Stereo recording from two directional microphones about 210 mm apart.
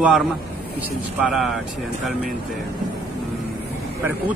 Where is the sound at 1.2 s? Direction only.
Centre (ahead or behind).